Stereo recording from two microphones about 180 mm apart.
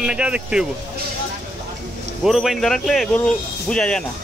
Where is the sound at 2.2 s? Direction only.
Centre (ahead or behind).